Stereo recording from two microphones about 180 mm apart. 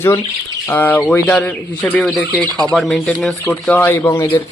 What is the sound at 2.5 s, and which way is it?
Speech, 20° right (ahead or behind).